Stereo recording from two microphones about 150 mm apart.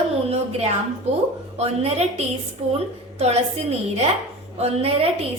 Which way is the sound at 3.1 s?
45° right (ahead or behind).